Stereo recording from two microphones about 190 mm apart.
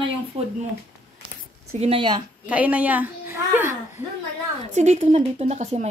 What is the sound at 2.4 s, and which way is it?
Speech, 5° right (ahead or behind).